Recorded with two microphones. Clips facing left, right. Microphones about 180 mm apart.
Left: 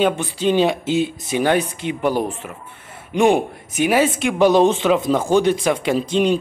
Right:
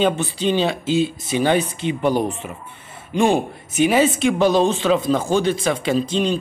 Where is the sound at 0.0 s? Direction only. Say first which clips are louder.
Left 1 dB; 10° left (ahead or behind).